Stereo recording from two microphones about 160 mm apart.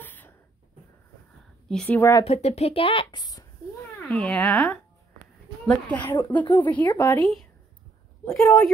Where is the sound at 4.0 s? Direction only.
5° left (ahead or behind).